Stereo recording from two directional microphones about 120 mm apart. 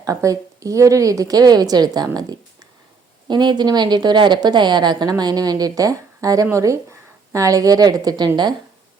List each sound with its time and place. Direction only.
0.0 s a woman's voice: 30° right (ahead or behind)
3.2 s a woman's voice: 40° right (ahead or behind)